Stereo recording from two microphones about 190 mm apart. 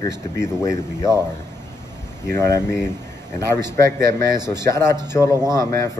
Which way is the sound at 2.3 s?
15° left (ahead or behind).